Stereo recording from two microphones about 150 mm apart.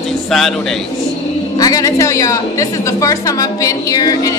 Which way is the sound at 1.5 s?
25° left (ahead or behind).